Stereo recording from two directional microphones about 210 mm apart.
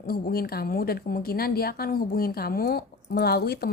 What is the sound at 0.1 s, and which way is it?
A woman's voice, 45° left (ahead or behind).